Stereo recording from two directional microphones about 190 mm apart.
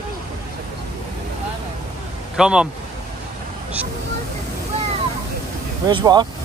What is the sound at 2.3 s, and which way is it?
Speech, 5° right (ahead or behind).